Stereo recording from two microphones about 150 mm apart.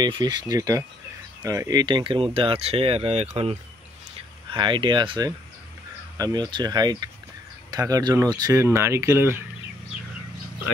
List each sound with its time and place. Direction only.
0.0 s speech: 30° right (ahead or behind); by 3.5 s 45° right (ahead or behind)
4.5 s speech: 30° right (ahead or behind); by 9.4 s 15° right (ahead or behind)